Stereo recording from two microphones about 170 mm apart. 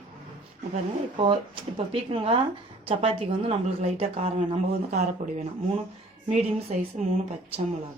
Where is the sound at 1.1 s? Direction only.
30° right (ahead or behind).